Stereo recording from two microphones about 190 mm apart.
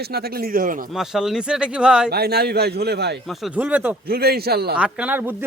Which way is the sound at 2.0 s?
55° right (ahead or behind).